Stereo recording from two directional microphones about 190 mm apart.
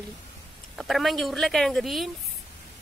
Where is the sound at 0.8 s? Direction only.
Centre (ahead or behind).